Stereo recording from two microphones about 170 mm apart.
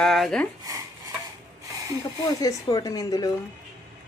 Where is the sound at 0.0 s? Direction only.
Centre (ahead or behind).